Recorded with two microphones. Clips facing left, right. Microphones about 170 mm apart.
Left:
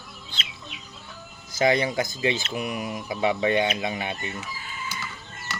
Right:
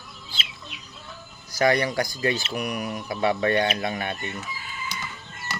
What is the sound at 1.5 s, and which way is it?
Speech, 20° left (ahead or behind).